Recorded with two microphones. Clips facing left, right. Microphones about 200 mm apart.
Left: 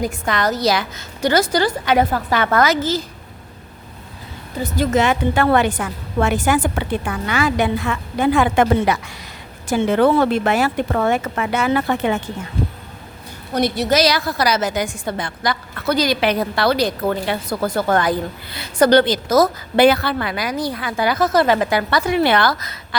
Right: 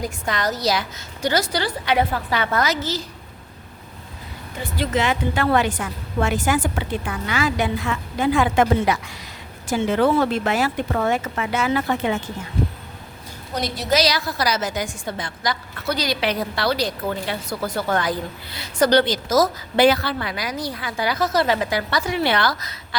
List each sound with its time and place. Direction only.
0.3 s a woman's voice: 60° left (ahead or behind)
4.5 s a woman's voice: 45° left (ahead or behind)
13.5 s a woman's voice: 60° left (ahead or behind)